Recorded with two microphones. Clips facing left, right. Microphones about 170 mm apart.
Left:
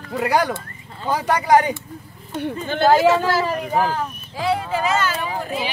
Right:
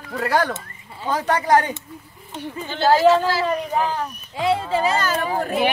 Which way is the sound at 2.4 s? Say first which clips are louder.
Left 3 dB; 55° left (ahead or behind).